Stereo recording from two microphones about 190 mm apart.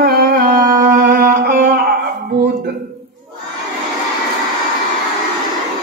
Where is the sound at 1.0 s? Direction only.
55° right (ahead or behind).